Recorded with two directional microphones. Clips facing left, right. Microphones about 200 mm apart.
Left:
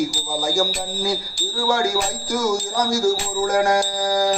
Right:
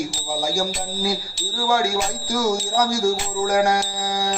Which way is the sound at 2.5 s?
20° right (ahead or behind).